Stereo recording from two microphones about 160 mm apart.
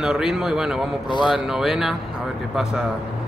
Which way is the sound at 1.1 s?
30° left (ahead or behind).